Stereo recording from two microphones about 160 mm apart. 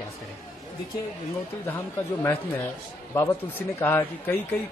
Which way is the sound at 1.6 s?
10° left (ahead or behind).